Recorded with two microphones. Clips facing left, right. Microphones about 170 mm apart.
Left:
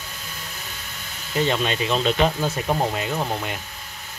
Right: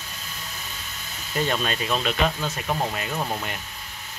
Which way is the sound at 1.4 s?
20° left (ahead or behind).